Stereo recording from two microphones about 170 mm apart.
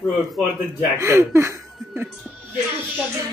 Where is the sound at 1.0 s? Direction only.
15° right (ahead or behind).